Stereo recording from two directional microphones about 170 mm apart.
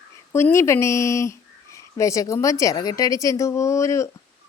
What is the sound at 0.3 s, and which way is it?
A woman's voice, 15° left (ahead or behind).